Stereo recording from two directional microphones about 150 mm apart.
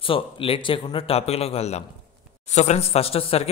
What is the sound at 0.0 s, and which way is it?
Speech, 35° left (ahead or behind).